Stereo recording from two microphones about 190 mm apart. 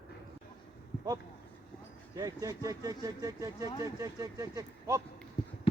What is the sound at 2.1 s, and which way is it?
Speech, 20° right (ahead or behind).